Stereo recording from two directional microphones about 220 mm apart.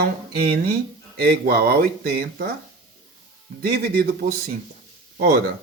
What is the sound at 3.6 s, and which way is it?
Speech, 45° right (ahead or behind).